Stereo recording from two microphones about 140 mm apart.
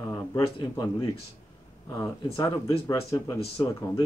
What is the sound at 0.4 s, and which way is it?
Speech, 35° left (ahead or behind).